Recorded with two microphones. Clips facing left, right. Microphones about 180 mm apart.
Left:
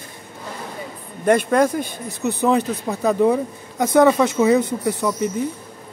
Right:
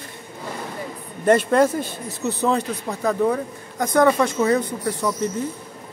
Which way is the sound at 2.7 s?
5° left (ahead or behind).